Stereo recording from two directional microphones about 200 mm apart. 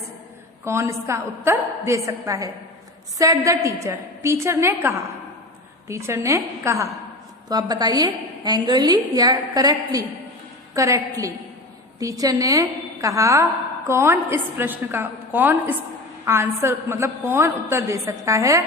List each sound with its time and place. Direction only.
0.6 s a woman's voice: 15° right (ahead or behind)